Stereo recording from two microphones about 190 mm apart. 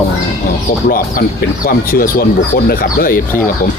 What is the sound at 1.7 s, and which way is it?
Speech, 50° left (ahead or behind).